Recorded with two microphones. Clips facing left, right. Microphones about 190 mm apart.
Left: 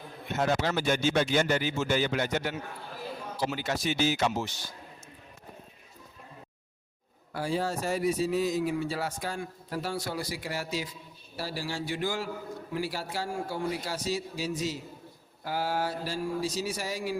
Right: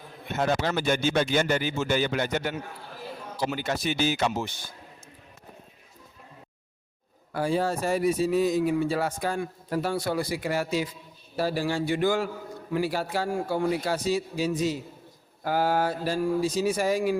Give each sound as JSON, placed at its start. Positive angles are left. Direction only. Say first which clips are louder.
{"t": 0.3, "sound": "speech", "louder": "right 2 dB", "side_deg": -55}
{"t": 7.3, "sound": "speech", "louder": "right 4 dB", "side_deg": -55}